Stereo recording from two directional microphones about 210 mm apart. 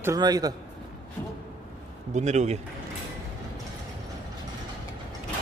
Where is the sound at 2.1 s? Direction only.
35° right (ahead or behind).